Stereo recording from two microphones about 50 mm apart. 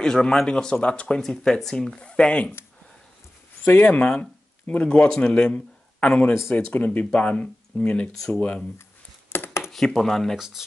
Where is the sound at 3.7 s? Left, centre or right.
Left.